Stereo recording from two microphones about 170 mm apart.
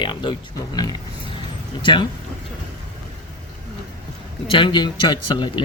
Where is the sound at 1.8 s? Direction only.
30° left (ahead or behind).